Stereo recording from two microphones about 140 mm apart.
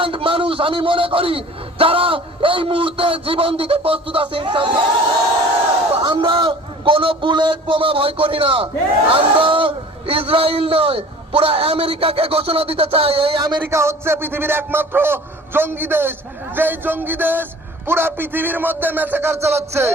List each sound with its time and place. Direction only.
0.0 s a man's voice: 40° right (ahead or behind)
6.0 s a man's voice: 35° right (ahead or behind)
13.7 s music: 20° right (ahead or behind)